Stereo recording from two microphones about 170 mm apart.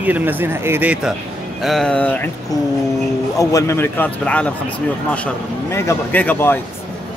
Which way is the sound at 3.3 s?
20° left (ahead or behind).